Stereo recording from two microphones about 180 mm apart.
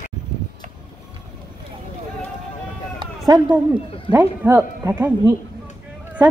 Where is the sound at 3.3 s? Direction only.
25° right (ahead or behind).